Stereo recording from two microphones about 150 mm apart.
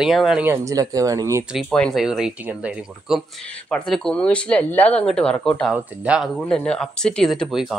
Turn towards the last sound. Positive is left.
turn(degrees=0)  # may be behind; listen again after turning